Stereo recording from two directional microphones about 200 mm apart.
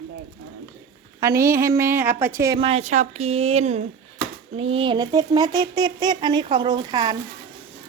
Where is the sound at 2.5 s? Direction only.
30° right (ahead or behind).